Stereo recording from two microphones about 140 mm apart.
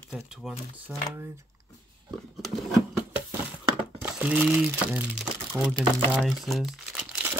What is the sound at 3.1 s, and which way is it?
Crumpling, 15° right (ahead or behind).